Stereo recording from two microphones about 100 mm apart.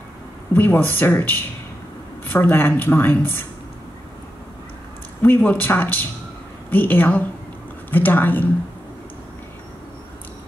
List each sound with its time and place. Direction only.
0.5 s speech: 20° left (ahead or behind)
5.2 s a woman's voice: 15° left (ahead or behind)